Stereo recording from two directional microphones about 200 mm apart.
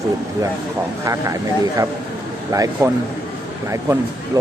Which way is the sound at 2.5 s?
15° right (ahead or behind).